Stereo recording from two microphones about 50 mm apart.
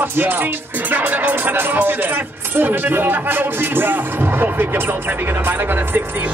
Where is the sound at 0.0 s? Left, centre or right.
Right.